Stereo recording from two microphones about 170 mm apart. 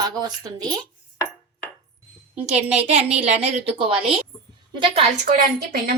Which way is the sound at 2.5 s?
40° right (ahead or behind).